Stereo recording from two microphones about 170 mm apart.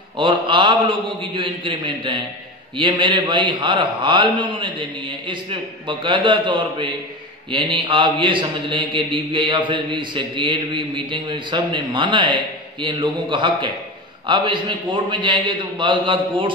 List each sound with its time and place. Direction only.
0.2 s speech: 30° right (ahead or behind)